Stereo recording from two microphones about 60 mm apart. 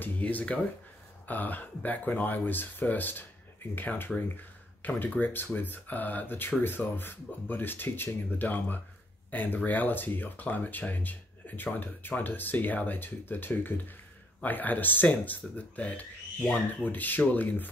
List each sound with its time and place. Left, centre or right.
0.0 s speech: left